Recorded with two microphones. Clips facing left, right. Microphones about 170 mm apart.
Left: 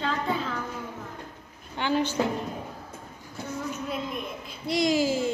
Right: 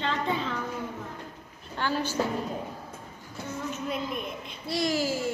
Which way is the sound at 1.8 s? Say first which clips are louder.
Left 3 dB; 20° left (ahead or behind).